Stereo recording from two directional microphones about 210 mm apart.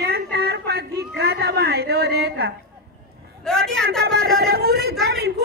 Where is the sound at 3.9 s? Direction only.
50° right (ahead or behind).